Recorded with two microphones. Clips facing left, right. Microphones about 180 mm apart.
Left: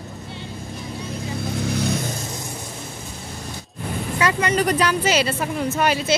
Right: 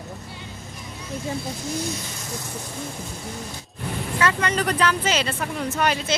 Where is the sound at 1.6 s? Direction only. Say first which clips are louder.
Left 5 dB; 65° left (ahead or behind).